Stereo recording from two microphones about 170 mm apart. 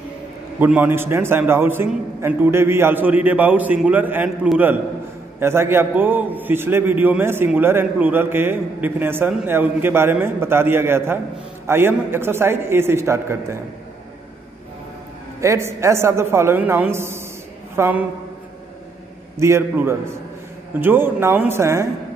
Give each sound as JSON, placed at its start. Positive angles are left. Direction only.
{"t": 0.6, "sound": "a man's voice", "side_deg": -10}
{"t": 15.4, "sound": "a man's voice", "side_deg": -15}
{"t": 19.3, "sound": "a man's voice", "side_deg": -15}